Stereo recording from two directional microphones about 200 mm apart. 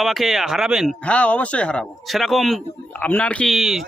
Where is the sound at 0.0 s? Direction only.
Centre (ahead or behind).